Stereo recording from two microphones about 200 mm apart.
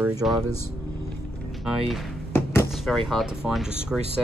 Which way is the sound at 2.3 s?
10° left (ahead or behind).